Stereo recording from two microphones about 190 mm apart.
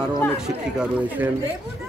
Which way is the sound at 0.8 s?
10° right (ahead or behind).